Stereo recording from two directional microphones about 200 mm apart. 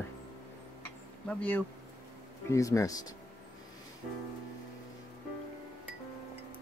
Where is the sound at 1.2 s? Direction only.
5° left (ahead or behind).